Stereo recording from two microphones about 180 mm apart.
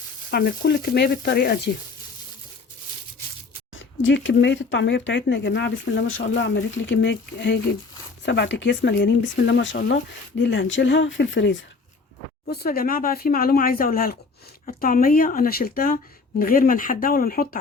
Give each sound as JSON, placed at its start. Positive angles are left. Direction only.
{"t": 0.3, "sound": "speech", "side_deg": 60}
{"t": 3.8, "sound": "speech", "side_deg": 90}
{"t": 12.5, "sound": "speech", "side_deg": 55}